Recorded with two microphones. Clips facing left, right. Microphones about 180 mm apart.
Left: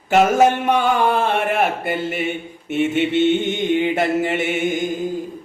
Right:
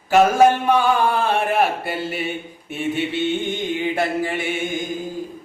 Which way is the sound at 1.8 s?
55° left (ahead or behind).